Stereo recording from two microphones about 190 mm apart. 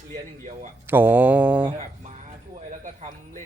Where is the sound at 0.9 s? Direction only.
10° right (ahead or behind).